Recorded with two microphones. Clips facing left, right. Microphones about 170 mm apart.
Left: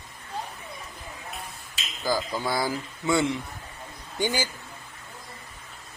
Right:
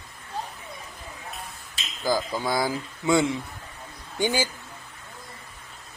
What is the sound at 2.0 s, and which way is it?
Speech, 15° right (ahead or behind).